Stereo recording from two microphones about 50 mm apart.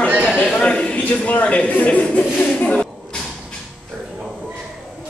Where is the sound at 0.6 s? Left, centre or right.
Centre.